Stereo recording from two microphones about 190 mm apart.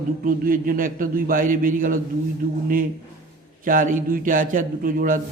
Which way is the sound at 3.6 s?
45° right (ahead or behind).